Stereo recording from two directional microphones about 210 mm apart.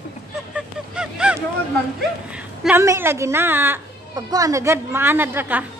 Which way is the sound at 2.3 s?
5° right (ahead or behind).